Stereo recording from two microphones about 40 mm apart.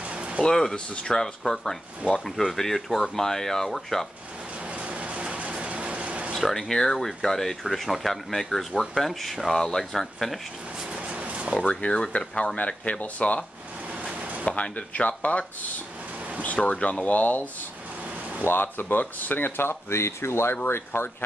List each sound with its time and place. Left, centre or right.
0.0 s a sound: right
0.4 s speech: centre
4.6 s a sound: right
6.4 s speech: centre
10.8 s a sound: right
11.7 s speech: left
12.5 s speech: left
14.4 s speech: left
16.4 s speech: left
17.0 s speech: left
18.4 s speech: left
19.6 s speech: left
20.6 s speech: left